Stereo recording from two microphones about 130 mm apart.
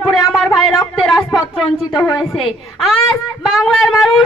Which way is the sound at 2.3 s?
Centre (ahead or behind).